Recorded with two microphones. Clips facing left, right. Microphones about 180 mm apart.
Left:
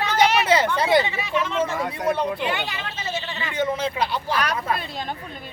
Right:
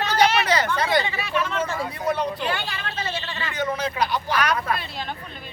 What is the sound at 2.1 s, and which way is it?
Speech, 20° left (ahead or behind).